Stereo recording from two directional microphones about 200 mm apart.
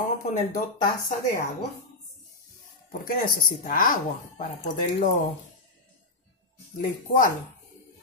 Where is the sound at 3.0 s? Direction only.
45° left (ahead or behind).